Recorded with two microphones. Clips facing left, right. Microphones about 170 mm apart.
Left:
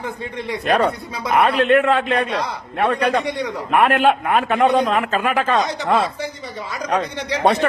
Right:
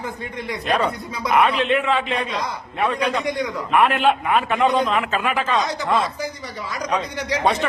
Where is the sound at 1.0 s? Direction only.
30° left (ahead or behind).